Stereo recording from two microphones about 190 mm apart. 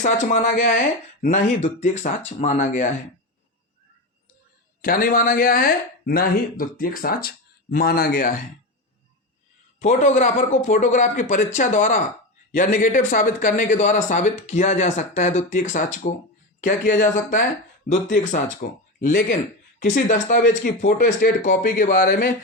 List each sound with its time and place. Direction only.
0.0 s speech: 40° left (ahead or behind)
4.8 s speech: 50° left (ahead or behind)
9.8 s speech: 40° left (ahead or behind)